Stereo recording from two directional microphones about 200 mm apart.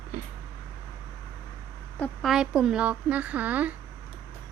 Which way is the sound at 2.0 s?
Centre (ahead or behind).